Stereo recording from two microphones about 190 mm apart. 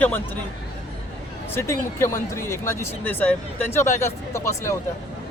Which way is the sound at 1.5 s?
15° left (ahead or behind).